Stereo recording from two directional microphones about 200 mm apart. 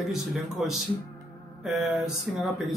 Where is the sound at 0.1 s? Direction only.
Centre (ahead or behind).